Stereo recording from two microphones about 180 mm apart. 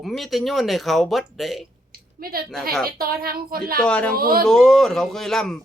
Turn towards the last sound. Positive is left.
turn(degrees=0)  # may be behind; listen again after turning